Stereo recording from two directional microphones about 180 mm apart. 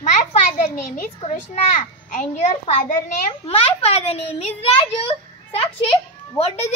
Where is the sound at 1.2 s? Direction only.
40° left (ahead or behind).